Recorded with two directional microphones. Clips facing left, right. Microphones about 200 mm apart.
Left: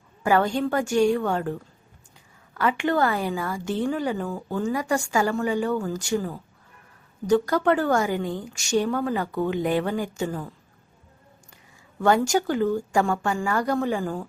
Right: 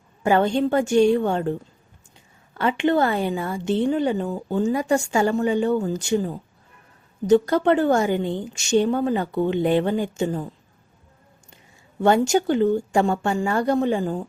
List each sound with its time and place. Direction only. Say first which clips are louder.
0.2 s speech: right 3 dB; 25° right (ahead or behind)
2.6 s speech: right 3 dB; 25° right (ahead or behind)
11.5 s speech: right 5 dB; 25° right (ahead or behind)